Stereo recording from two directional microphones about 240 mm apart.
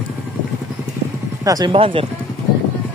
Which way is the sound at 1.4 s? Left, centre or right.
Centre.